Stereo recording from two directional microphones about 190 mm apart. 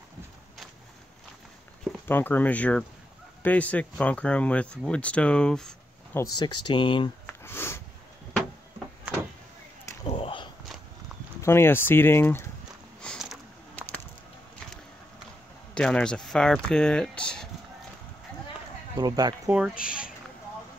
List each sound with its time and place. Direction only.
2.0 s speech: 10° left (ahead or behind)
6.1 s speech: 20° left (ahead or behind)
7.2 s sniff: 10° left (ahead or behind)
10.0 s whip: 30° left (ahead or behind)
11.4 s speech: 10° left (ahead or behind)
13.0 s a sound: centre (ahead or behind)
15.7 s speech: 5° left (ahead or behind)
18.9 s speech: 20° right (ahead or behind)
19.5 s speech: 5° right (ahead or behind)